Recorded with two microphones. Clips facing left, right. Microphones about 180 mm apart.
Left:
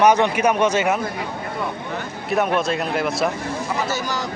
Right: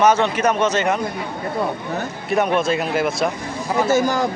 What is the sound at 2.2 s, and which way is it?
Speech, centre (ahead or behind).